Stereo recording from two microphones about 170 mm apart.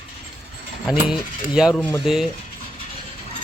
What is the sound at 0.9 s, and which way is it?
Speech, centre (ahead or behind).